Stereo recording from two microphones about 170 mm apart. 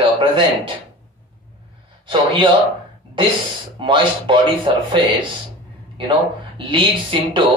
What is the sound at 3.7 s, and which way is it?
Speech, 30° right (ahead or behind).